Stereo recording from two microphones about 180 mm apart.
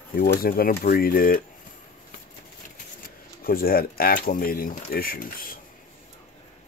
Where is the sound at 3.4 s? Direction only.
55° left (ahead or behind).